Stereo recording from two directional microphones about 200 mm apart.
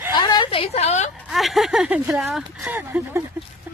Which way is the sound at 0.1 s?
20° left (ahead or behind).